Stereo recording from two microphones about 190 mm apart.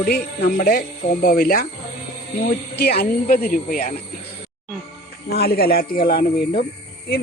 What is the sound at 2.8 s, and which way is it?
Speech, 55° left (ahead or behind).